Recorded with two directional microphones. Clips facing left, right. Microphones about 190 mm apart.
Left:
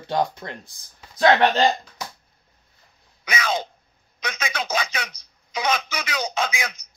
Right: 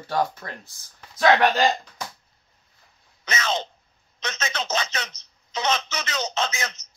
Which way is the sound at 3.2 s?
10° left (ahead or behind).